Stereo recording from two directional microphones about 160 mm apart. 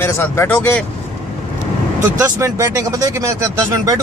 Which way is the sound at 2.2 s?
20° right (ahead or behind).